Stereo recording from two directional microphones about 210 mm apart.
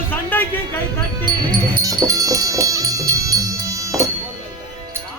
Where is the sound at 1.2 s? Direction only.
20° right (ahead or behind).